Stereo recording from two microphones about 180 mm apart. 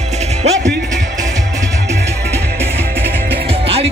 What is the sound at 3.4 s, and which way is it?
Music, 30° right (ahead or behind).